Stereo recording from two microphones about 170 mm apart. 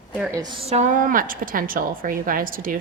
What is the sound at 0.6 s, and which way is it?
A woman's voice, 45° right (ahead or behind).